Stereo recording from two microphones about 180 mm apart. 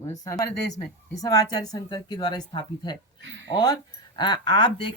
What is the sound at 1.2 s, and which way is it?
Speech, 20° left (ahead or behind).